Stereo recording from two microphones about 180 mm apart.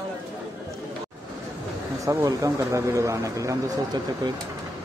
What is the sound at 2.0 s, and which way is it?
Speech, 15° right (ahead or behind).